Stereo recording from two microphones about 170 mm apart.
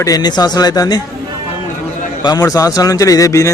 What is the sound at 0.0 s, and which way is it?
A man's voice, 20° left (ahead or behind).